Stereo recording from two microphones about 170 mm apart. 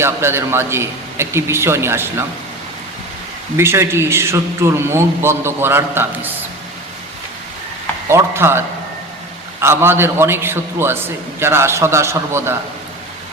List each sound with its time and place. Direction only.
0.0 s a man's voice: 15° right (ahead or behind)
3.6 s a man's voice: 15° right (ahead or behind)
8.0 s a man's voice: 15° right (ahead or behind)